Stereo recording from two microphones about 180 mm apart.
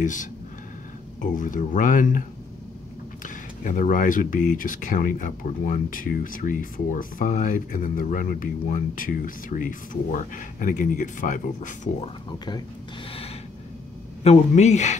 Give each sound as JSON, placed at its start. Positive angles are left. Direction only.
{"t": 0.0, "sound": "speech", "side_deg": 45}
{"t": 3.6, "sound": "speech", "side_deg": 45}
{"t": 12.3, "sound": "speech", "side_deg": 25}
{"t": 14.2, "sound": "speech", "side_deg": 40}